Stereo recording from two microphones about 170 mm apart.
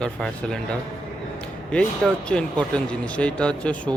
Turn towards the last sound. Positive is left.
turn(degrees=5)  # may be behind; listen again after turning